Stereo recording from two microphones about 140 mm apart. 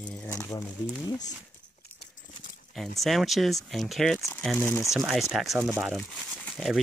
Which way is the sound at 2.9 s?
Centre (ahead or behind).